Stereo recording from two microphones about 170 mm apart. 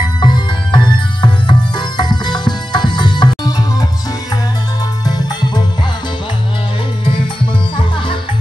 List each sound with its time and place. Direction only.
0.2 s music: 25° left (ahead or behind)
5.0 s music: 25° left (ahead or behind)